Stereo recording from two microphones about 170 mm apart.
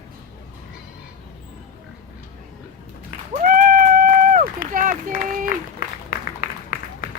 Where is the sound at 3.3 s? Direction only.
55° right (ahead or behind).